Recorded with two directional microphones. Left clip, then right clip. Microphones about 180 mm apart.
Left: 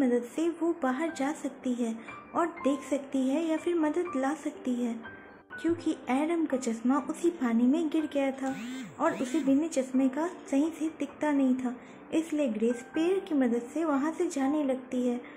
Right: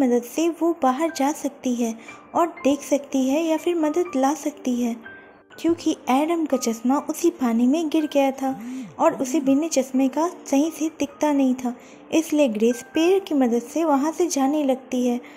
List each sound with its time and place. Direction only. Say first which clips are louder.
0.0 s speech: right 7 dB; 20° right (ahead or behind)